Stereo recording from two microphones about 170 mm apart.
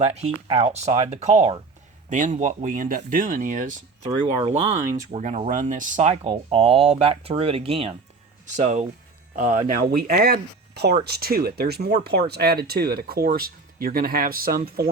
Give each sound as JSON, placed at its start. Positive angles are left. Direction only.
{"t": 0.0, "sound": "speech", "side_deg": -40}
{"t": 4.4, "sound": "speech", "side_deg": -35}